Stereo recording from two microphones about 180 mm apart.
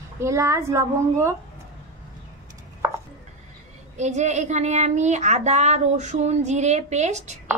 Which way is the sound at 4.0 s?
40° right (ahead or behind).